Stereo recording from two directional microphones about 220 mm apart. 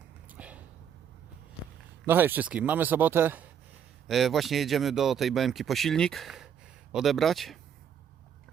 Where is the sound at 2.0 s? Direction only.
10° right (ahead or behind).